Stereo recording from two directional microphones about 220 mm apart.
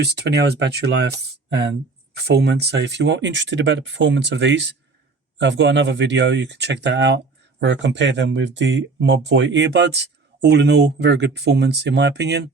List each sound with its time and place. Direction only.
0.0 s speech: 50° right (ahead or behind)
2.1 s speech: 50° right (ahead or behind)